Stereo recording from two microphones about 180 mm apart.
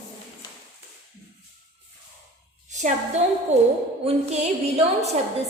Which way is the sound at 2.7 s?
40° right (ahead or behind).